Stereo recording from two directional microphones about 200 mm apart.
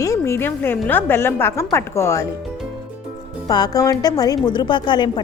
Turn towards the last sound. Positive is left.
turn(degrees=25)  # may be behind; listen again after turning